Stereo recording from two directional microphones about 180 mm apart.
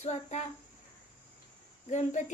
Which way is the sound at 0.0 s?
40° left (ahead or behind).